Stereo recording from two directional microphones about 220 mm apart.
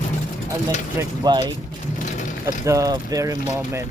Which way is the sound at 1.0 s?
20° right (ahead or behind).